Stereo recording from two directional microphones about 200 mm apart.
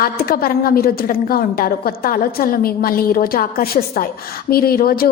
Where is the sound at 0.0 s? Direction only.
45° left (ahead or behind).